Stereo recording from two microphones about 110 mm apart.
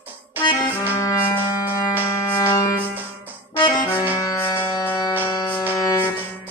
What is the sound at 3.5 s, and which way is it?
Music, 40° left (ahead or behind).